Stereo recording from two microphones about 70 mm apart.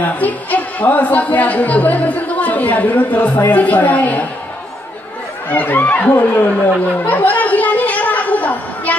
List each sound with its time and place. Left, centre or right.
0.0 s speech: left
5.5 s speech: left
7.0 s chatter: left